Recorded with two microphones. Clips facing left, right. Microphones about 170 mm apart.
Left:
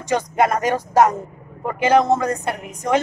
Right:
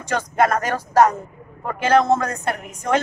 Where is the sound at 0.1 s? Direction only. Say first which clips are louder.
Left 1 dB; 15° left (ahead or behind).